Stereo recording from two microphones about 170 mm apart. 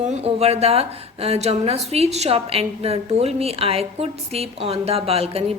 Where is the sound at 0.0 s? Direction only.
40° right (ahead or behind).